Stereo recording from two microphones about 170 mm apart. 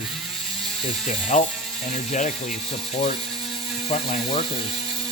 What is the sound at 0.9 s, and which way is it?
Ratchet, 40° left (ahead or behind).